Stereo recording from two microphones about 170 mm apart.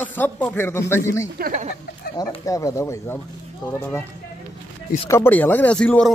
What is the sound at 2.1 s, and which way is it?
Speech, 20° left (ahead or behind).